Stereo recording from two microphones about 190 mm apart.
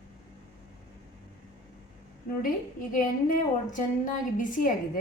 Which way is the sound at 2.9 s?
45° left (ahead or behind).